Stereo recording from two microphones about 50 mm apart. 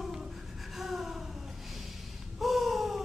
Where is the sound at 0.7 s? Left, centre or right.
Centre.